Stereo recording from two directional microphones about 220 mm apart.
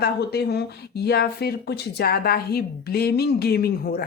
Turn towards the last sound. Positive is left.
turn(degrees=45)  # may be behind; listen again after turning